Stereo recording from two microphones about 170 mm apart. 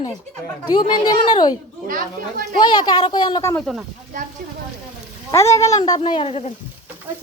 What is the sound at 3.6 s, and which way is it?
Speech, 5° right (ahead or behind).